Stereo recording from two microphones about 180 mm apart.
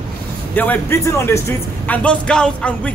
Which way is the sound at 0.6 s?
10° left (ahead or behind).